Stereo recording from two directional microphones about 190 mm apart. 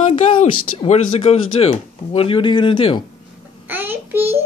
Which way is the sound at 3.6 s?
10° right (ahead or behind).